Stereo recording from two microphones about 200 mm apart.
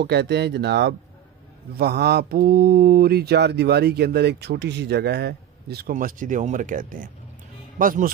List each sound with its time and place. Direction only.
0.0 s speech: 60° right (ahead or behind)